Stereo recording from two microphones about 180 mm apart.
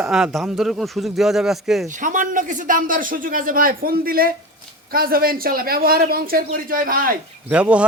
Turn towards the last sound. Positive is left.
turn(degrees=-5)  # may be behind; listen again after turning